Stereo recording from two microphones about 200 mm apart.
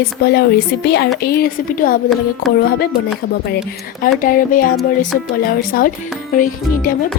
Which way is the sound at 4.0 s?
45° left (ahead or behind).